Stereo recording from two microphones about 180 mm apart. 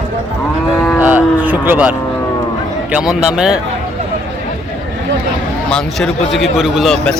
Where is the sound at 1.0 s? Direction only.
10° right (ahead or behind).